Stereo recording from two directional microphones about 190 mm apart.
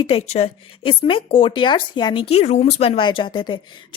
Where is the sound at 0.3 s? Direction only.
30° left (ahead or behind).